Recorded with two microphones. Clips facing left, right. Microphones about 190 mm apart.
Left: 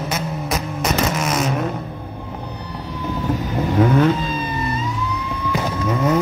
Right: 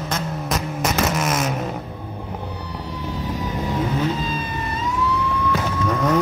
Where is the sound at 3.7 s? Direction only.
65° left (ahead or behind).